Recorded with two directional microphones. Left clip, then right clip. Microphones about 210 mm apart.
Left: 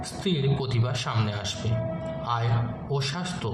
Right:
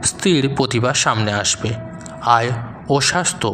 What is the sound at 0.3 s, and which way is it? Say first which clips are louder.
A man's voice: right 11 dB; 50° right (ahead or behind).